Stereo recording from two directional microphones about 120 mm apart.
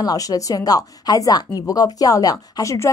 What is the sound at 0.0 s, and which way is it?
A woman's voice, 30° left (ahead or behind).